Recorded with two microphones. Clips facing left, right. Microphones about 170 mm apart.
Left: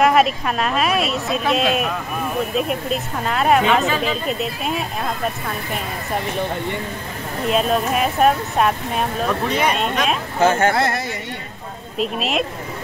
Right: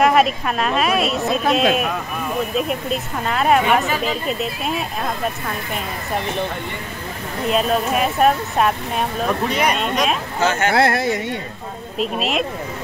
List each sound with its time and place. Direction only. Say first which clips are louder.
0.0 s speech: even; centre (ahead or behind)
7.4 s speech: even; centre (ahead or behind)
10.7 s speech: right 3 dB; 65° right (ahead or behind)
12.0 s speech: even; centre (ahead or behind)